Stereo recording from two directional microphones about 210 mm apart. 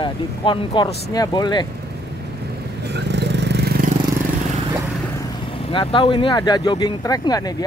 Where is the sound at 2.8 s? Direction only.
55° right (ahead or behind).